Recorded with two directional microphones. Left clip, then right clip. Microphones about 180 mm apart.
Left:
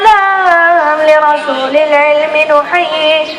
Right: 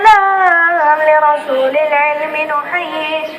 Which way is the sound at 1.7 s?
55° left (ahead or behind).